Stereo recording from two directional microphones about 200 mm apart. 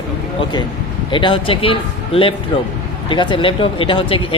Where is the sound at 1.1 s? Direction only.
25° left (ahead or behind).